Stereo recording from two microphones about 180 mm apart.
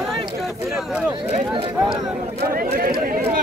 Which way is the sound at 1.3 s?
30° right (ahead or behind).